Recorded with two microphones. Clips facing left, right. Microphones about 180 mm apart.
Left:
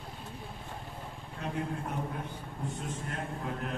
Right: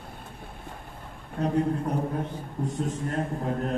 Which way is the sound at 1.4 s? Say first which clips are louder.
Right 10 dB; 40° right (ahead or behind).